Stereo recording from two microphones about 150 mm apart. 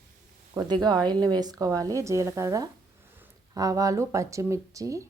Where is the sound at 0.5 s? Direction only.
30° right (ahead or behind).